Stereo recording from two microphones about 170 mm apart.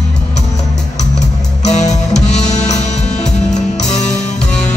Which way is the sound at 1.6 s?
45° left (ahead or behind).